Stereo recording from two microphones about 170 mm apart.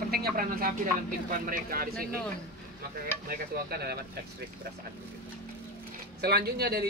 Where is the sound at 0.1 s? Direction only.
60° right (ahead or behind).